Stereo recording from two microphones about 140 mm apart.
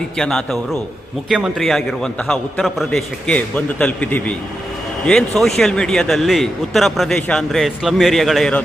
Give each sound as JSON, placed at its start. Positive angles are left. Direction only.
{"t": 0.2, "sound": "speech", "side_deg": 5}